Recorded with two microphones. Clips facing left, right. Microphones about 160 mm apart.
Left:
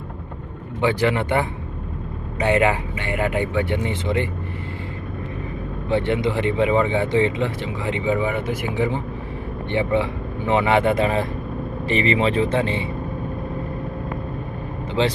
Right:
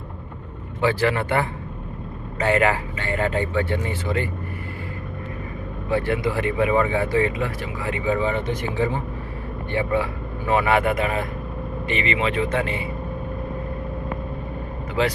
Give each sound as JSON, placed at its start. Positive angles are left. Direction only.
{"t": 0.8, "sound": "speech", "side_deg": 20}
{"t": 5.9, "sound": "speech", "side_deg": 25}
{"t": 15.0, "sound": "speech", "side_deg": 25}